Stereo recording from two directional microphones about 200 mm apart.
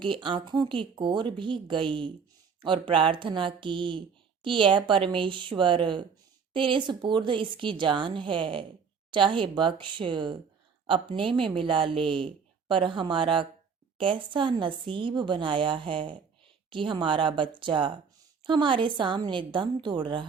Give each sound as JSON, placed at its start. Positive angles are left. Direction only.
{"t": 0.0, "sound": "a woman's voice", "side_deg": -25}